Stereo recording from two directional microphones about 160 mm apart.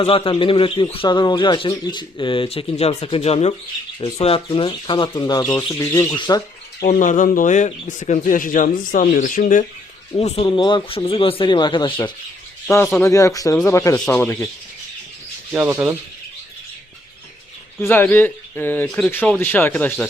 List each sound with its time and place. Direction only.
0.0 s speech: 35° left (ahead or behind); by 6.1 s 20° left (ahead or behind)
6.1 s squawk: 25° left (ahead or behind)
6.8 s speech: 55° left (ahead or behind)
10.2 s speech: 40° left (ahead or behind)
12.6 s speech: 15° left (ahead or behind)
15.5 s speech: 10° right (ahead or behind)
17.7 s speech: 10° left (ahead or behind)